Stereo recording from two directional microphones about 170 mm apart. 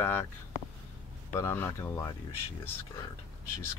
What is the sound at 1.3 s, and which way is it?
Speech, 15° left (ahead or behind).